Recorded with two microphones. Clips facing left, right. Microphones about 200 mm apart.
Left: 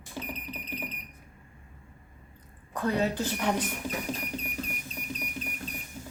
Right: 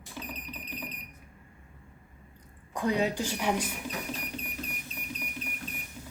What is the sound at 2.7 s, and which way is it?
Speech, 15° right (ahead or behind).